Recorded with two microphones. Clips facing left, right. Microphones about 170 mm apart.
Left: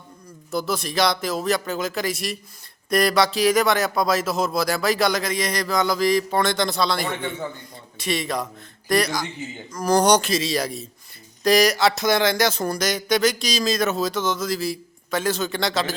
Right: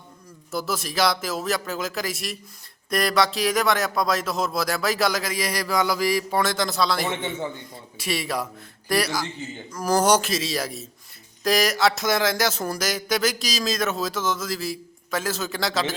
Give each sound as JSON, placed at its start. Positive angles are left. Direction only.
{"t": 0.5, "sound": "speech", "side_deg": -5}